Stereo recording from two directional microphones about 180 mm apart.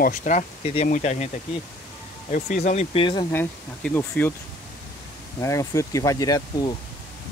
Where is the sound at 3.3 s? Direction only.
10° left (ahead or behind).